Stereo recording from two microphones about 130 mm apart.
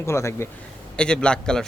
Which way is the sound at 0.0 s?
20° left (ahead or behind).